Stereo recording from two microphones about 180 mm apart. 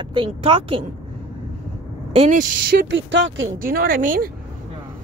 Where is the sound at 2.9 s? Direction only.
90° right.